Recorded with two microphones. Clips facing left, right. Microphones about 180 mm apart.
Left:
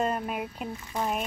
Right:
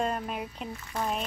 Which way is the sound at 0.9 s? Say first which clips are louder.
Left 1 dB; 10° left (ahead or behind).